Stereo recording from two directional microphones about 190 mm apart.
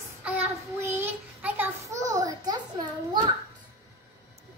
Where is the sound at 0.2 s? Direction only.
10° right (ahead or behind).